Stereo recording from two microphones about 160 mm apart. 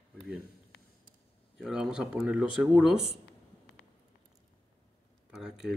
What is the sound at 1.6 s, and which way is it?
Speech, centre (ahead or behind).